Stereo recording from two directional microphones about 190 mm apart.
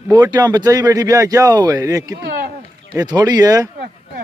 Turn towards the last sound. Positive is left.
turn(degrees=-20)  # may be behind; listen again after turning